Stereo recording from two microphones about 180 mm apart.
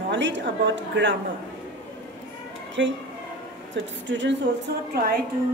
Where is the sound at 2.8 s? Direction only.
85° right; by 5.2 s 55° right (ahead or behind).